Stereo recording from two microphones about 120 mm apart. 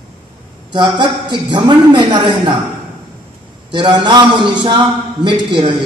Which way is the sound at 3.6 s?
40° right (ahead or behind).